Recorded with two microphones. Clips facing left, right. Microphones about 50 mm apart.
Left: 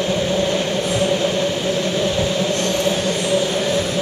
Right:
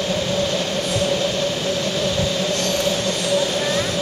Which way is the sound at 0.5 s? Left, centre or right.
Left.